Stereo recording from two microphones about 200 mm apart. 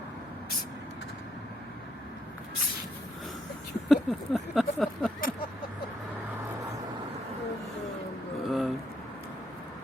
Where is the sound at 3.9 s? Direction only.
Centre (ahead or behind).